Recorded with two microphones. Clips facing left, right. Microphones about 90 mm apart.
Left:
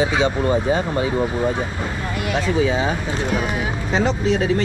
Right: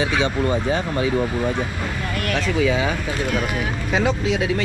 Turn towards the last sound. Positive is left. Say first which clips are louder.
# left 2 dB
turn(degrees=-5)  # may be behind; listen again after turning